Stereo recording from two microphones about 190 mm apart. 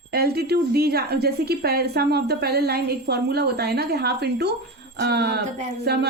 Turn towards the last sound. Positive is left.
turn(degrees=-60)  # may be behind; listen again after turning